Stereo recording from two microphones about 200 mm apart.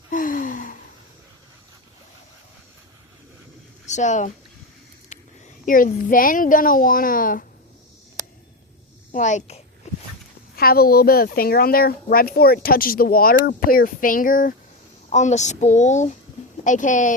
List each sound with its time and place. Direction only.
0.1 s gasp: 40° left (ahead or behind)
3.8 s speech: 35° left (ahead or behind)
5.6 s speech: 45° left (ahead or behind)
9.1 s a sound: 35° left (ahead or behind)
10.5 s speech: 50° left (ahead or behind)
15.1 s a sound: 35° left (ahead or behind)